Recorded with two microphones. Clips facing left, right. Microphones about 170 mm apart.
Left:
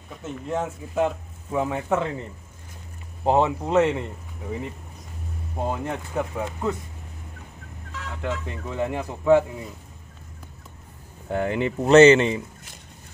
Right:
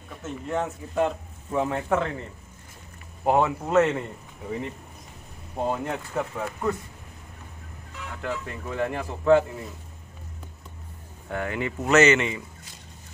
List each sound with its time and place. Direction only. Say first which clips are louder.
0.5 s speech: left 1 dB; 5° left (ahead or behind)
3.3 s speech: left 2 dB; 20° left (ahead or behind)
4.5 s speech: even; 5° left (ahead or behind)
6.3 s speech: left 1 dB; 15° left (ahead or behind)
8.2 s speech: left 2 dB; 20° left (ahead or behind)
11.2 s speech: left 5 dB; 25° left (ahead or behind)